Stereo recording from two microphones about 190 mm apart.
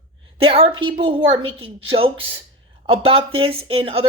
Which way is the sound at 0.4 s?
30° right (ahead or behind).